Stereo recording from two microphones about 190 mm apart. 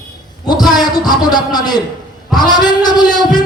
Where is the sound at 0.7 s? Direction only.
20° left (ahead or behind).